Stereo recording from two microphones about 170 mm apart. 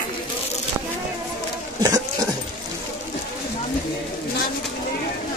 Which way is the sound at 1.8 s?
25° right (ahead or behind).